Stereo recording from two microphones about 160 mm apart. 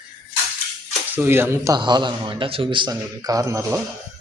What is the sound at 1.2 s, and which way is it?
A man's voice, 15° right (ahead or behind).